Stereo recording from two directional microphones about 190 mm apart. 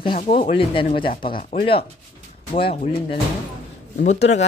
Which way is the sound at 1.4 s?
45° left (ahead or behind).